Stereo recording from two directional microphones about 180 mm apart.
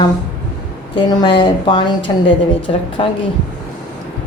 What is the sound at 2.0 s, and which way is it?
Speech, 90° left.